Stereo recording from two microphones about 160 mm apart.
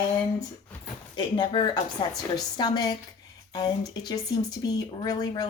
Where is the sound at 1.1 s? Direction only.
30° left (ahead or behind).